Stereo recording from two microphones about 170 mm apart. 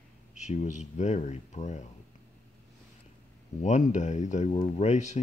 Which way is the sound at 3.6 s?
45° left (ahead or behind).